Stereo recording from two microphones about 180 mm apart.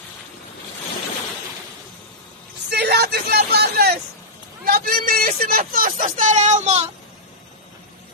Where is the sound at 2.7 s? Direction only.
65° right (ahead or behind); by 6.9 s 40° right (ahead or behind).